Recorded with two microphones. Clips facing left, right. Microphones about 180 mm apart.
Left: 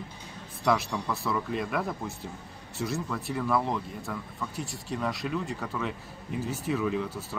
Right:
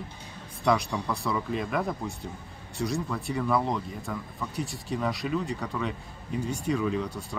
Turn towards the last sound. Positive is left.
turn(degrees=5)  # may be behind; listen again after turning